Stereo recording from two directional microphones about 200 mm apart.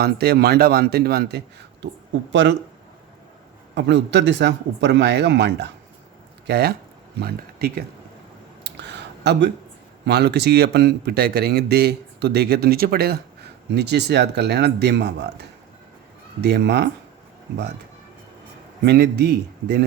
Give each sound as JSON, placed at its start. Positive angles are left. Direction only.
{"t": 0.0, "sound": "a man's voice", "side_deg": -50}
{"t": 3.8, "sound": "a man's voice", "side_deg": -60}
{"t": 8.6, "sound": "a sound", "side_deg": -60}
{"t": 10.1, "sound": "a man's voice", "side_deg": -55}
{"t": 18.9, "sound": "a man's voice", "side_deg": -55}